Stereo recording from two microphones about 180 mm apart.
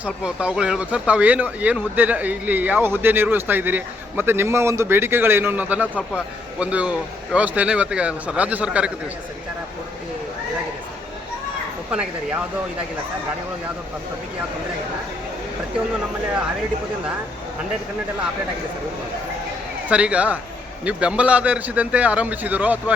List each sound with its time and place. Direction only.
0.0 s speech: 5° right (ahead or behind)
5.9 s speech: 10° left (ahead or behind)
6.6 s speech: 5° right (ahead or behind)
11.9 s speech: 5° right (ahead or behind)
19.9 s speech: 5° right (ahead or behind)